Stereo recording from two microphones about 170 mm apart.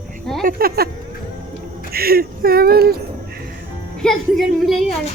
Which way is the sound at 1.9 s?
60° right (ahead or behind).